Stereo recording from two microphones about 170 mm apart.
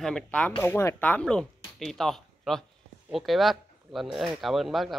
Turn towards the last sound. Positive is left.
turn(degrees=0)  # may be behind; listen again after turning